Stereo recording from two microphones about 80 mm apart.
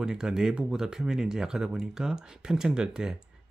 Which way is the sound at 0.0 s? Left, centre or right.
Centre.